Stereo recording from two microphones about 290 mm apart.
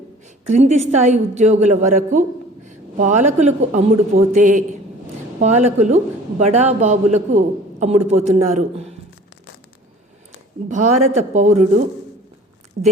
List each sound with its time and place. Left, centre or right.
0.4 s a man's voice: right
10.7 s a man's voice: right
12.8 s a man's voice: right